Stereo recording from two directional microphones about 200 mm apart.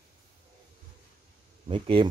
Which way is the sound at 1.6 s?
25° right (ahead or behind).